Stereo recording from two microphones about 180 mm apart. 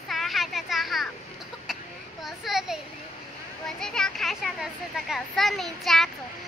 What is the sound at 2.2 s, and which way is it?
Children playing, centre (ahead or behind).